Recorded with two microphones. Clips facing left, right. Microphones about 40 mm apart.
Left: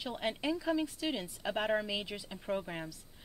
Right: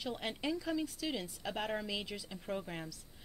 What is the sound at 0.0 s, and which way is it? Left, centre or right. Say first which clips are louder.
A woman's voice: left 3 dB; centre.